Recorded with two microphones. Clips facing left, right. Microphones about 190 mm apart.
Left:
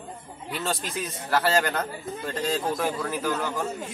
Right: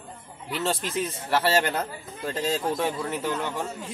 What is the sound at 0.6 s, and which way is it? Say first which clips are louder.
A man's voice: right 4 dB; 25° right (ahead or behind).